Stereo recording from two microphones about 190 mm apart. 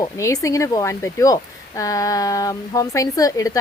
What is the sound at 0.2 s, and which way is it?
Speech, 15° left (ahead or behind).